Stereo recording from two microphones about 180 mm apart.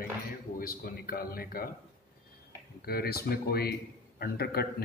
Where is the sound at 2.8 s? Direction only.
60° left (ahead or behind).